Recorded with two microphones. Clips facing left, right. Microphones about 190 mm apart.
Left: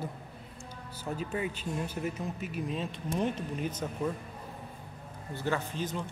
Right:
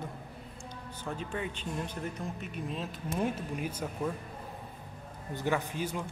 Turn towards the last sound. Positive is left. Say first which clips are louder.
# right 1 dB
turn(degrees=-10)  # may be behind; listen again after turning